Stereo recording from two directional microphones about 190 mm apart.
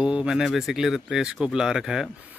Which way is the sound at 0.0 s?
5° right (ahead or behind).